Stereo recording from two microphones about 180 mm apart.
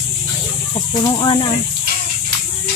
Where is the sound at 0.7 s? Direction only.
30° left (ahead or behind).